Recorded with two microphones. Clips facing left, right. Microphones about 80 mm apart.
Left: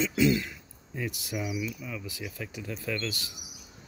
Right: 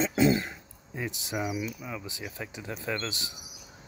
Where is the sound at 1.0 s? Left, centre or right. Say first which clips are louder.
Left 1 dB; right.